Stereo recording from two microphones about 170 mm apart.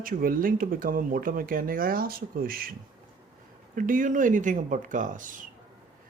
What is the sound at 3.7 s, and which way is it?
Speech, 50° right (ahead or behind).